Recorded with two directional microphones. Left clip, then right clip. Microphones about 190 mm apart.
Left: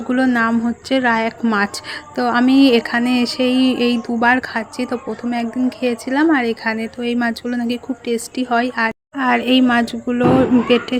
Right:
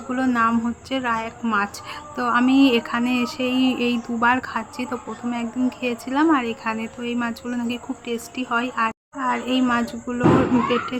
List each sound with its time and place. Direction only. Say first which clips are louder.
0.3 s a woman's voice: left 3 dB; 25° left (ahead or behind)
9.1 s a woman's voice: left 9 dB; 35° left (ahead or behind)